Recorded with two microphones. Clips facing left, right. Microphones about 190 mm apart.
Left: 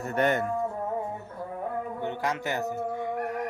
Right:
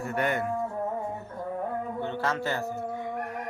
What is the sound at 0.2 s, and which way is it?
Speech, 25° left (ahead or behind).